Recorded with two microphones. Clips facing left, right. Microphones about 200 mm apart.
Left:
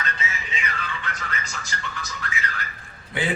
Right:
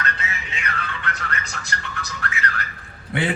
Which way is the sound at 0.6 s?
65° right (ahead or behind).